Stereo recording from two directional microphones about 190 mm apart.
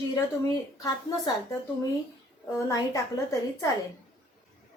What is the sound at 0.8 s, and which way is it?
Speech, 20° left (ahead or behind).